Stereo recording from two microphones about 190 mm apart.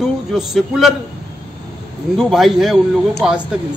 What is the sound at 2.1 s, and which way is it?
A man's voice, centre (ahead or behind).